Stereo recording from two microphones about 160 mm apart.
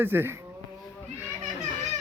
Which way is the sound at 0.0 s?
15° right (ahead or behind).